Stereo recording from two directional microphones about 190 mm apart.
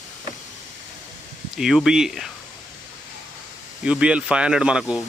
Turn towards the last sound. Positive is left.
turn(degrees=-5)  # may be behind; listen again after turning